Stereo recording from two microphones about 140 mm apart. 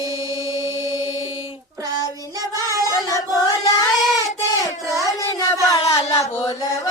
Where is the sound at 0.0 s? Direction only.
25° right (ahead or behind).